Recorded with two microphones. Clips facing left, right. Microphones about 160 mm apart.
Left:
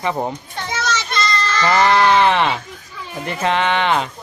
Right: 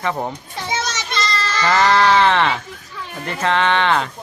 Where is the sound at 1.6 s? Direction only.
20° left (ahead or behind).